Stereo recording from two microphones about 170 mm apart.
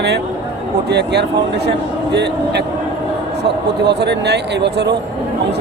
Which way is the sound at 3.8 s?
85° right.